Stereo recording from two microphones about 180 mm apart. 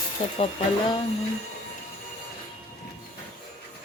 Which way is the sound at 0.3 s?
30° left (ahead or behind).